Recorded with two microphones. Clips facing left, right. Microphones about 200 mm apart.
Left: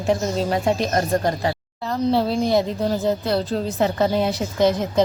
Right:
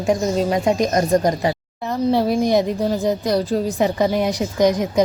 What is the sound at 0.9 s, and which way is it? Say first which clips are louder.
A woman's voice: right 4 dB; 15° right (ahead or behind).